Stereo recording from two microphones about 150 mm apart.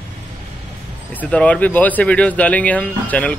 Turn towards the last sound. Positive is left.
turn(degrees=10)  # may be behind; listen again after turning